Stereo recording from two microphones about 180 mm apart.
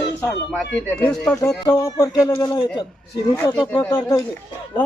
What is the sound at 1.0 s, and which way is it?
Speech, 5° left (ahead or behind).